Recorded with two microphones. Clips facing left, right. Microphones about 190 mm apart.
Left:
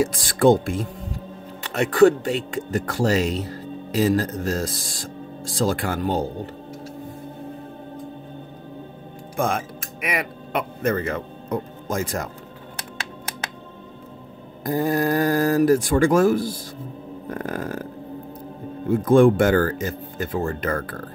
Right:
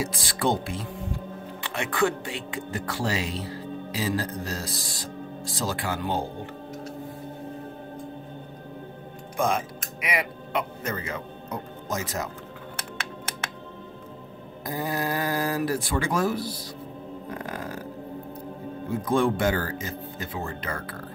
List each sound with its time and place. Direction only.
0.1 s speech: 50° left (ahead or behind)
10.0 s speech: 55° left (ahead or behind)
14.6 s speech: 50° left (ahead or behind)
17.3 s burping: 50° left (ahead or behind)
18.9 s speech: 50° left (ahead or behind)